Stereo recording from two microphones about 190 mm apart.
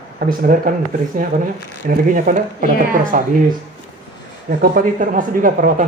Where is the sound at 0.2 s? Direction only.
45° right (ahead or behind).